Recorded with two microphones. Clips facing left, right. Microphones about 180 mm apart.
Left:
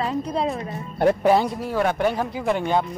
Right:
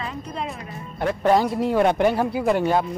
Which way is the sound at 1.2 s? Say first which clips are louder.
Even; 5° left (ahead or behind).